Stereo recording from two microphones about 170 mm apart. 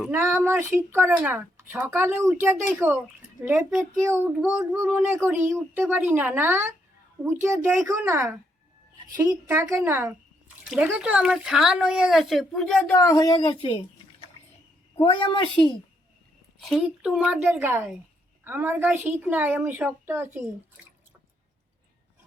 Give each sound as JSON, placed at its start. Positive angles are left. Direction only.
{"t": 0.0, "sound": "speech", "side_deg": -10}
{"t": 7.9, "sound": "speech", "side_deg": -15}
{"t": 13.0, "sound": "a woman's voice", "side_deg": 20}
{"t": 14.9, "sound": "a woman's voice", "side_deg": 30}
{"t": 16.6, "sound": "speech", "side_deg": 0}